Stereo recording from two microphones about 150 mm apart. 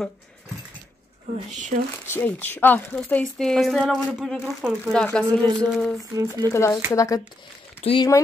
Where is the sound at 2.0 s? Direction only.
15° left (ahead or behind).